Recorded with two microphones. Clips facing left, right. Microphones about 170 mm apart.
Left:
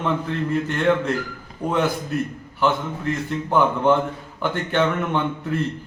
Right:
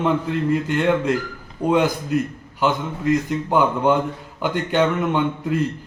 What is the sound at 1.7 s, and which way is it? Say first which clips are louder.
A man's voice: right 4 dB; 15° right (ahead or behind).